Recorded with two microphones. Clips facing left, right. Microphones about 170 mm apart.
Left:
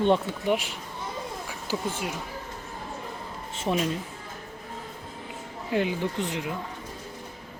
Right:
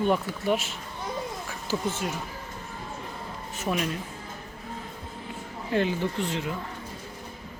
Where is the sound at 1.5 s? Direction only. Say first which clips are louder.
Right 1 dB; 15° left (ahead or behind).